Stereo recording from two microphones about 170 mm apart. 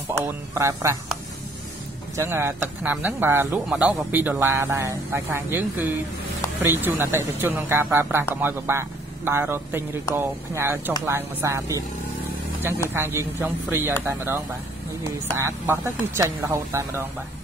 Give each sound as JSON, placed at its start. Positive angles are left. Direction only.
{"t": 0.6, "sound": "speech", "side_deg": -15}
{"t": 2.1, "sound": "speech", "side_deg": -15}
{"t": 12.9, "sound": "speech", "side_deg": -15}